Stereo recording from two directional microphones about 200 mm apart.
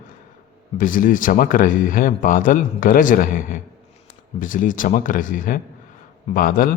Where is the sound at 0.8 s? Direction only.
40° left (ahead or behind).